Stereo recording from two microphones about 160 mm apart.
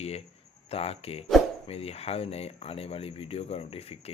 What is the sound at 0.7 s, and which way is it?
Speech, 40° left (ahead or behind).